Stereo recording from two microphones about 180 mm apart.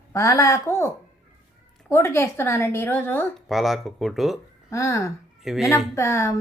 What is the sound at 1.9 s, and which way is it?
A woman's voice, 15° left (ahead or behind).